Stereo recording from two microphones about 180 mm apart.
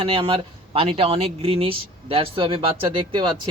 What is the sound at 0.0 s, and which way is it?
Speech, 30° right (ahead or behind).